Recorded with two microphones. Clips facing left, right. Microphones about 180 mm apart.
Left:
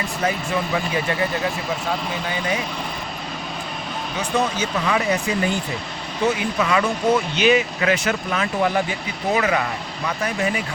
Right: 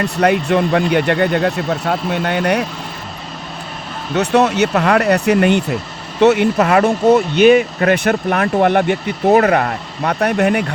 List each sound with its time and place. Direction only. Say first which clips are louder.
0.0 s speech: right 9 dB; 70° right (ahead or behind)
4.1 s speech: right 9 dB; 70° right (ahead or behind)